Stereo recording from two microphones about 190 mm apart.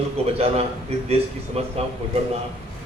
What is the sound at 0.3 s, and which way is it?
Speech, 35° right (ahead or behind).